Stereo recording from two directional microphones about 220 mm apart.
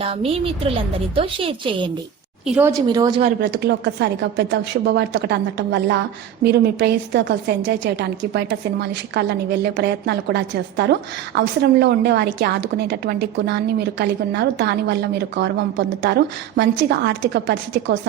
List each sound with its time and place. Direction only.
0.0 s a woman's voice: 25° right (ahead or behind)
2.5 s a woman's voice: 10° right (ahead or behind)
3.4 s a woman's voice: 50° right (ahead or behind)